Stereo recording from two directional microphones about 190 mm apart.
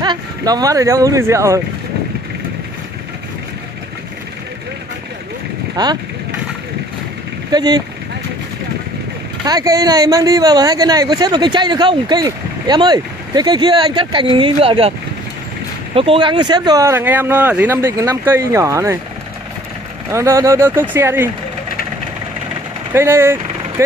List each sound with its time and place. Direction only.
0.0 s speech: 20° right (ahead or behind)
5.8 s speech: 20° right (ahead or behind)
7.5 s speech: 20° right (ahead or behind)
9.4 s speech: 20° right (ahead or behind)
20.1 s speech: 15° right (ahead or behind)
22.9 s speech: 15° right (ahead or behind)